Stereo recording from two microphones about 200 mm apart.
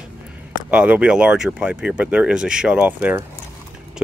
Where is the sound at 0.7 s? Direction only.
5° right (ahead or behind).